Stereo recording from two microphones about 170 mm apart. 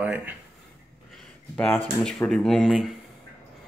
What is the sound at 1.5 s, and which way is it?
Speech, 10° left (ahead or behind).